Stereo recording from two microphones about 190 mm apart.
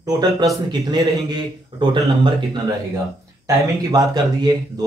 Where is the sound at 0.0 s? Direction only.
20° right (ahead or behind).